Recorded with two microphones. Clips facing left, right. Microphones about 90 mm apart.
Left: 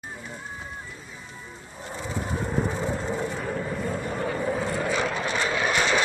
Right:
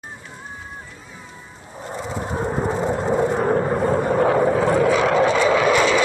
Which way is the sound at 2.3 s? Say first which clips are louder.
Right 6 dB; 35° right (ahead or behind).